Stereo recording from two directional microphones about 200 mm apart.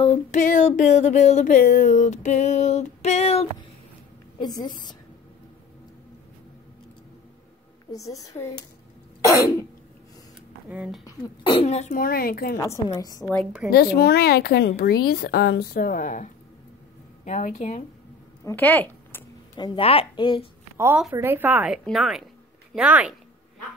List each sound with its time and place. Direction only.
0.0 s a sound: 35° left (ahead or behind)
4.6 s speech: 20° left (ahead or behind)
7.9 s a woman's voice: 15° left (ahead or behind)
9.2 s cough: 15° left (ahead or behind)
10.7 s a woman's voice: 5° right (ahead or behind)
11.1 s a sound: 20° left (ahead or behind); by 12.5 s 50° left (ahead or behind)
12.5 s a woman's voice: 15° left (ahead or behind)
13.2 s a woman's voice: 5° left (ahead or behind)
13.7 s speech: 50° left (ahead or behind)
17.2 s a sound: 35° left (ahead or behind)
18.4 s a sound: 10° left (ahead or behind)
19.5 s speech: 20° left (ahead or behind)
20.7 s a woman's voice: 10° right (ahead or behind)